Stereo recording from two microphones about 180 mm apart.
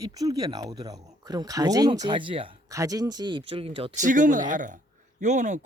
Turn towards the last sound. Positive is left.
turn(degrees=-40)  # may be behind; listen again after turning